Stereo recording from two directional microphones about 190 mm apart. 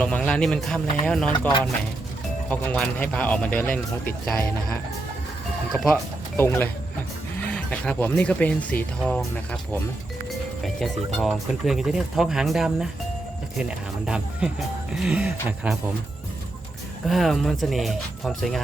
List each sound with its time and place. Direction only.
0.0 s speech: 5° left (ahead or behind)
1.3 s speech: 25° left (ahead or behind)
2.5 s speech: 10° left (ahead or behind); by 15.8 s 10° right (ahead or behind)
17.1 s speech: centre (ahead or behind)